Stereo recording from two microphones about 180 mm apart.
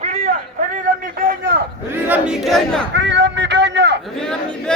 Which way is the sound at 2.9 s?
85° right.